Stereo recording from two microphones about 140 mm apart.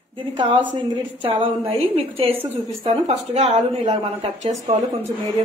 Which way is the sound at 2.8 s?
55° right (ahead or behind).